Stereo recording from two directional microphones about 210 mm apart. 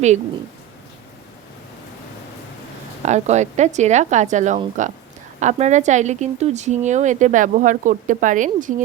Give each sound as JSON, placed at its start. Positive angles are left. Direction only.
{"t": 3.0, "sound": "a woman's voice", "side_deg": -35}